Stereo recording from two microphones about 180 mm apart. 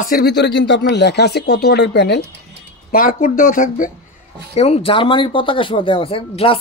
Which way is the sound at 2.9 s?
50° left (ahead or behind).